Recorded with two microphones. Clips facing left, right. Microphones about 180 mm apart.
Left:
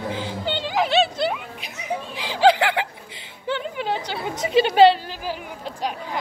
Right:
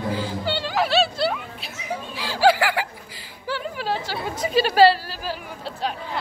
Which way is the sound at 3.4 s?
20° left (ahead or behind).